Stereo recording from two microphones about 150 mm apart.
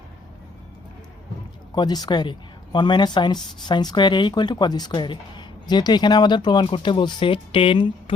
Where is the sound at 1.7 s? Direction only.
30° left (ahead or behind).